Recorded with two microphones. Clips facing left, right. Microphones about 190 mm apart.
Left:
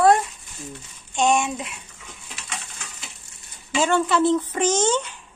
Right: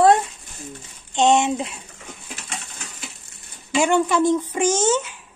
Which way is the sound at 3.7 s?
15° right (ahead or behind).